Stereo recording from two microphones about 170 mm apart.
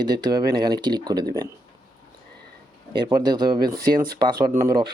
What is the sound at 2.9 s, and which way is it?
Speech, 25° right (ahead or behind).